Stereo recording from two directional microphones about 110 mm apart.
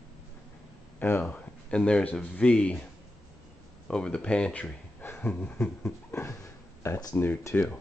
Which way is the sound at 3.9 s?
10° left (ahead or behind).